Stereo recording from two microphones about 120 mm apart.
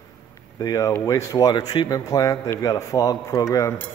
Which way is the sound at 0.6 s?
30° left (ahead or behind).